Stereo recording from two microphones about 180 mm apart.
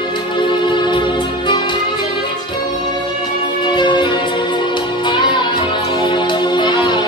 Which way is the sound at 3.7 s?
25° left (ahead or behind).